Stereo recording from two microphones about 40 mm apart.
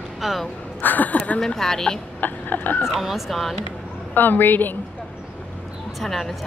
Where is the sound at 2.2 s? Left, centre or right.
Left.